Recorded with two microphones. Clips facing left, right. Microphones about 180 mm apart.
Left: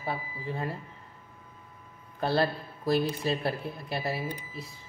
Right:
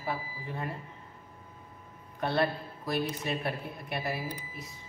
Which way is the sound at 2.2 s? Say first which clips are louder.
Left 2 dB; 30° left (ahead or behind).